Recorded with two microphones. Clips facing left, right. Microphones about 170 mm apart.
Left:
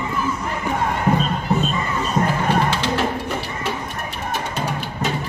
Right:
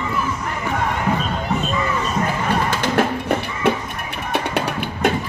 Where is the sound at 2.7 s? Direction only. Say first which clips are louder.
Right 2 dB; 55° right (ahead or behind).